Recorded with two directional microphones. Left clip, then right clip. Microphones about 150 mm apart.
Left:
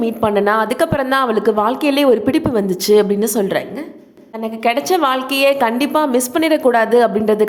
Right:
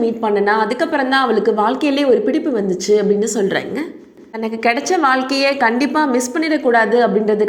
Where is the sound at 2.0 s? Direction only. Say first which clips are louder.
Right 1 dB; 30° left (ahead or behind).